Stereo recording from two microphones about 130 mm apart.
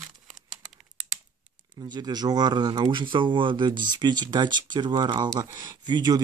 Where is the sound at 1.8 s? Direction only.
35° right (ahead or behind).